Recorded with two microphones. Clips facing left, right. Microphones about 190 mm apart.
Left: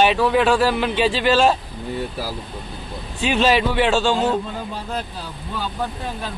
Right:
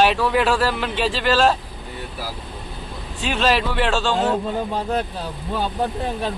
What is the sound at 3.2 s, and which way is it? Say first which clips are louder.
Speech: left 3 dB; centre (ahead or behind).